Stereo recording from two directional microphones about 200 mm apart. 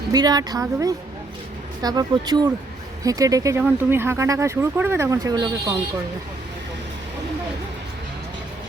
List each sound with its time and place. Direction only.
0.1 s a woman's voice: 20° right (ahead or behind)